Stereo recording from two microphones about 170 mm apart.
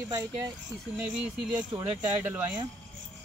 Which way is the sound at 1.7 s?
25° right (ahead or behind).